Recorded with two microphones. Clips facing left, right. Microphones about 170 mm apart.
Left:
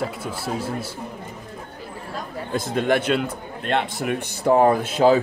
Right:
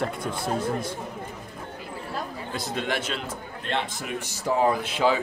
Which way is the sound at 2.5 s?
50° left (ahead or behind).